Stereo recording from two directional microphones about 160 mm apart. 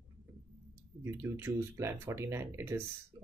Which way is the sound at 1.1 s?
15° right (ahead or behind).